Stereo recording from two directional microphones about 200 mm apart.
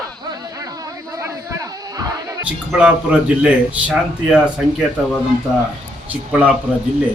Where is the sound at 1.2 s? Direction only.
15° right (ahead or behind).